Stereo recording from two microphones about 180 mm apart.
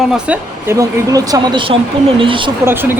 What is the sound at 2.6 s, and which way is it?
Speech, 10° right (ahead or behind).